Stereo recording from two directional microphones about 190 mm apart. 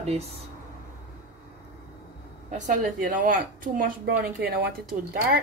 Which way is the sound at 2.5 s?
40° right (ahead or behind).